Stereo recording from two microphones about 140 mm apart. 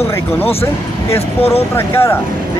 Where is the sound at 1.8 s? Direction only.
15° left (ahead or behind).